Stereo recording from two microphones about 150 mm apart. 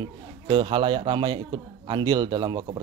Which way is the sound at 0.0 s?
30° right (ahead or behind).